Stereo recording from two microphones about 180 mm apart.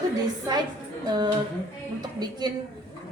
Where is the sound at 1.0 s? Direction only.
25° right (ahead or behind).